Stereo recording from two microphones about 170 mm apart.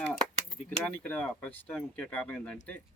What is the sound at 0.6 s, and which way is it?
Speech, 5° left (ahead or behind).